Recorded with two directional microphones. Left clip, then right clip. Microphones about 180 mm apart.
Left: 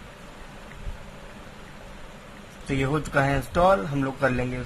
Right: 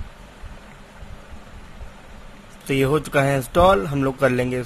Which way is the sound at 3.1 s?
45° right (ahead or behind).